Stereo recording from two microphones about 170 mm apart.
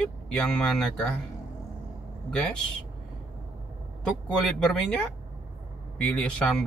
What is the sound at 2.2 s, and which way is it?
Speech, 5° left (ahead or behind).